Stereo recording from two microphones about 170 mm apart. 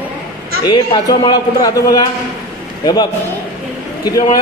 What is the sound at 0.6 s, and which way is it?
A man's voice, 25° left (ahead or behind).